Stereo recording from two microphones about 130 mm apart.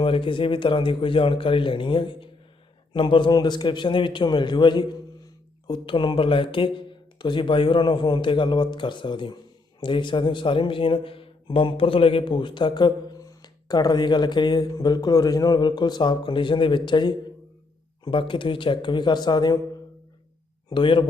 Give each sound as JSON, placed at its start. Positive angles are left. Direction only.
{"t": 0.0, "sound": "speech", "side_deg": 45}
{"t": 20.7, "sound": "speech", "side_deg": 35}